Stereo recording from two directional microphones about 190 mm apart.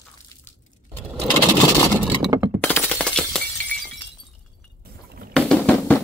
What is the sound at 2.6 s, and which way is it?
Breaking, 10° left (ahead or behind).